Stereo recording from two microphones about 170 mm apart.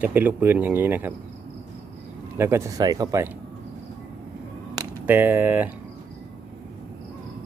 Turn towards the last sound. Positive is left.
turn(degrees=-10)  # may be behind; listen again after turning